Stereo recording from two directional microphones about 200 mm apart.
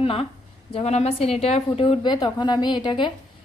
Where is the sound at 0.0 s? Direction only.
30° left (ahead or behind).